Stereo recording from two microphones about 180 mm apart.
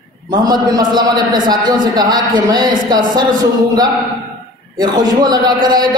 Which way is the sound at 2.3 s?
50° right (ahead or behind).